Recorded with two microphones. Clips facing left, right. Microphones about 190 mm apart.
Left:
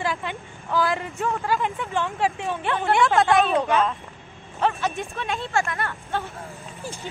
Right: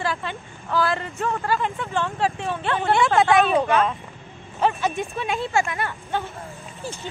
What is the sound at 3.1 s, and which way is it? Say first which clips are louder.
Speech: right 3 dB; centre (ahead or behind).